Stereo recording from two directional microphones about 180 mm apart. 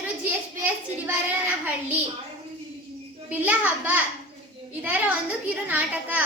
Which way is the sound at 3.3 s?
10° right (ahead or behind).